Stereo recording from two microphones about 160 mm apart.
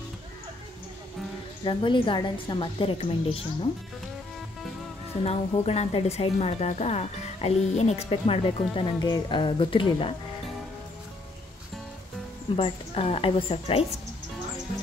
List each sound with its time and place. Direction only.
1.6 s speech: 30° left (ahead or behind)
5.2 s speech: 40° left (ahead or behind)
12.5 s speech: 35° left (ahead or behind)